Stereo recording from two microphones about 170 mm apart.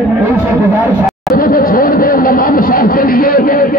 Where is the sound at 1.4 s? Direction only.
60° left (ahead or behind).